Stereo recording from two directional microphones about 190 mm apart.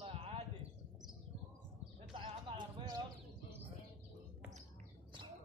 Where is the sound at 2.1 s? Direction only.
25° right (ahead or behind).